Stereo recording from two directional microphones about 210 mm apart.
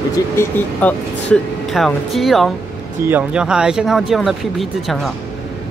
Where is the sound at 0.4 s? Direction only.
10° left (ahead or behind).